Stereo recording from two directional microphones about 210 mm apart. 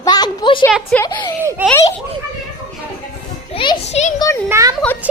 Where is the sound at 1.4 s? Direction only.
10° right (ahead or behind).